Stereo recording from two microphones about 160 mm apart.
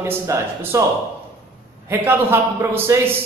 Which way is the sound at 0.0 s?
15° right (ahead or behind).